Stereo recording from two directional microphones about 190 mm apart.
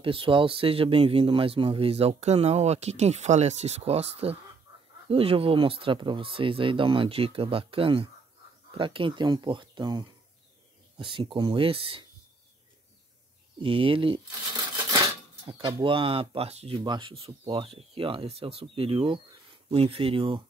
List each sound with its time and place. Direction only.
0.0 s speech: 25° right (ahead or behind)
13.6 s speech: 25° right (ahead or behind)
14.5 s a sound: 20° right (ahead or behind)
14.9 s speech: 20° right (ahead or behind)